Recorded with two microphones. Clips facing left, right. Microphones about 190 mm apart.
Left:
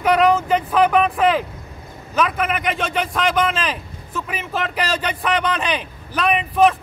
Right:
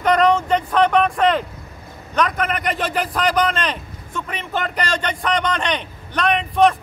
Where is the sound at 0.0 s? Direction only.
5° left (ahead or behind).